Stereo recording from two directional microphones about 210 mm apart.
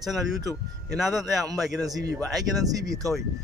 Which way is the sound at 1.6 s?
Centre (ahead or behind).